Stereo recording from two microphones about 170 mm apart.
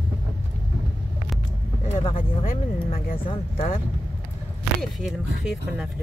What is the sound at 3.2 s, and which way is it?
Speech, 35° left (ahead or behind).